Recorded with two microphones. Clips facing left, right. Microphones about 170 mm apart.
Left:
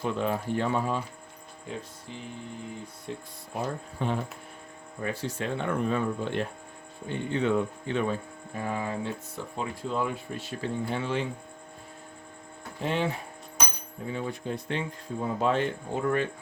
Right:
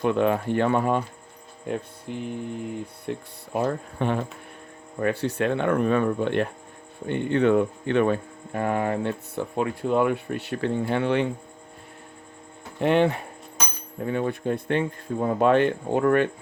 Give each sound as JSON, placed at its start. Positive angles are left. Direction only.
{"t": 0.0, "sound": "speech", "side_deg": -65}
{"t": 12.8, "sound": "speech", "side_deg": -65}